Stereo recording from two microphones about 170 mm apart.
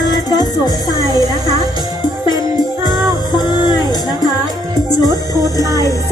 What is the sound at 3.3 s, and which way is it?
Music, 25° left (ahead or behind).